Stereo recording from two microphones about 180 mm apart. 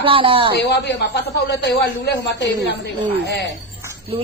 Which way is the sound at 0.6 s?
70° left (ahead or behind).